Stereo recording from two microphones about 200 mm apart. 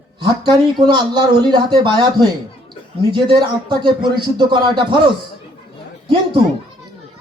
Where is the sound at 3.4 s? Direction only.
20° right (ahead or behind).